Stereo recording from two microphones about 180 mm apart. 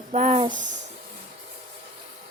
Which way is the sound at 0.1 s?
40° right (ahead or behind).